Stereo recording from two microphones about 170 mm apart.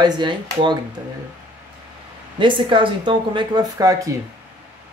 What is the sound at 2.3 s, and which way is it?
Speech, 30° right (ahead or behind).